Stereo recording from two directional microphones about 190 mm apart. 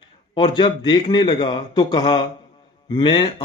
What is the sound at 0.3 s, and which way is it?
Speech, 25° left (ahead or behind).